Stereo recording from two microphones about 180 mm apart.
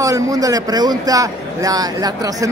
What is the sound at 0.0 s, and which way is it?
A man's voice, 20° right (ahead or behind).